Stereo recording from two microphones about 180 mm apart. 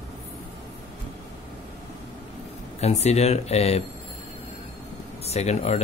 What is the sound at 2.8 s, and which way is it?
Speech, 35° left (ahead or behind).